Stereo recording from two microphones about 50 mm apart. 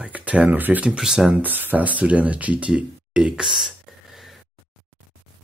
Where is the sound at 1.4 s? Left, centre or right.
Right.